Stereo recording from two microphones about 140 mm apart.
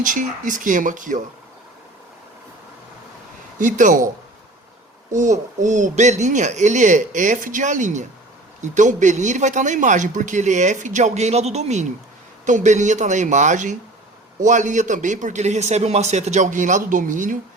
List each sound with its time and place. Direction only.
0.0 s speech: 70° right (ahead or behind)
3.6 s speech: 65° right (ahead or behind)
5.1 s speech: 60° right (ahead or behind)